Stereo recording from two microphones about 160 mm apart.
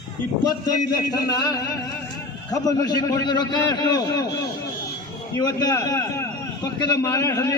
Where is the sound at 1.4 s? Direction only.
25° left (ahead or behind).